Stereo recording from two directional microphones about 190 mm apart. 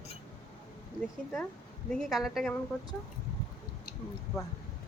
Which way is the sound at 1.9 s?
Centre (ahead or behind).